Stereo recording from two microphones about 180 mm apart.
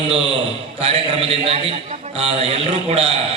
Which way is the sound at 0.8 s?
30° right (ahead or behind).